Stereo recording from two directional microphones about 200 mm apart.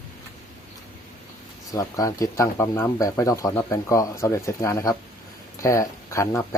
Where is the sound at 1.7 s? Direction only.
15° left (ahead or behind).